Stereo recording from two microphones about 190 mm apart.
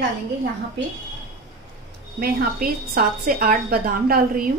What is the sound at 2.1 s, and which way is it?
A woman's voice, 50° right (ahead or behind).